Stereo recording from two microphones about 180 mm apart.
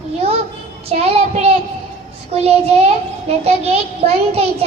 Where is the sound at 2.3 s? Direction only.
35° right (ahead or behind).